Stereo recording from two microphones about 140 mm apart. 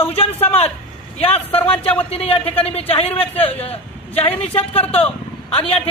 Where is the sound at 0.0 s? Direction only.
45° left (ahead or behind).